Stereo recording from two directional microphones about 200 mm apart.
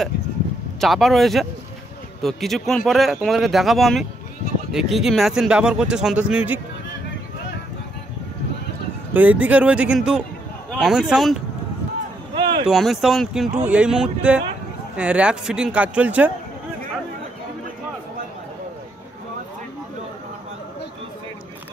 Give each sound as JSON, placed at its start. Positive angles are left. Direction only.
{"t": 0.7, "sound": "speech", "side_deg": 0}
{"t": 9.1, "sound": "speech", "side_deg": -10}
{"t": 12.4, "sound": "a sound", "side_deg": -25}
{"t": 12.6, "sound": "speech", "side_deg": 0}